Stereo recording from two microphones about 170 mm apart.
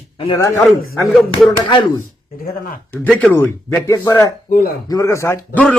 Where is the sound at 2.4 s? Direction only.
60° left (ahead or behind).